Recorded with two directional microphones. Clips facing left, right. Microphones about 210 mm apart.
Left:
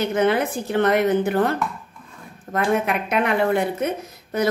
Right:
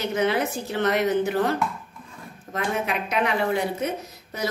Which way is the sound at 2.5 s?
55° left (ahead or behind).